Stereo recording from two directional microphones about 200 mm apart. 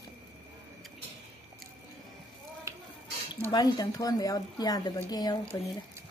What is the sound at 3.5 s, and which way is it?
A woman's voice, 20° left (ahead or behind).